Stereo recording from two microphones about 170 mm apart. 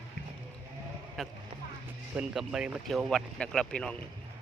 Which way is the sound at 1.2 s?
Centre (ahead or behind).